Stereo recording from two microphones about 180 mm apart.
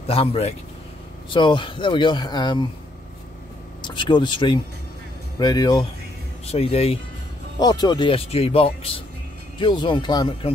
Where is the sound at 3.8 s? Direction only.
25° left (ahead or behind).